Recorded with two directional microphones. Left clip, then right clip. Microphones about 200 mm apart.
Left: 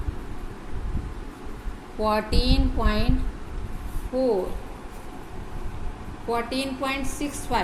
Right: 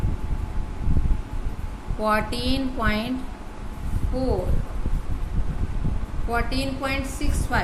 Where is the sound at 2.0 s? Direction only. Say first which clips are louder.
Right 1 dB; 15° right (ahead or behind).